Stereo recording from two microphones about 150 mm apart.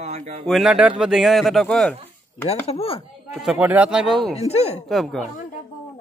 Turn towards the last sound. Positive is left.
turn(degrees=0)  # may be behind; listen again after turning